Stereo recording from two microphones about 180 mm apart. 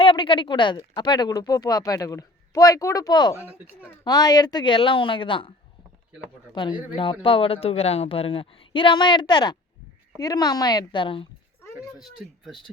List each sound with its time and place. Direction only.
0.0 s speech: 30° left (ahead or behind)
11.8 s speech: centre (ahead or behind)